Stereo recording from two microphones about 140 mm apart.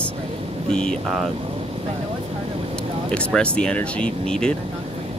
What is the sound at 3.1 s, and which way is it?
Speech, 5° left (ahead or behind).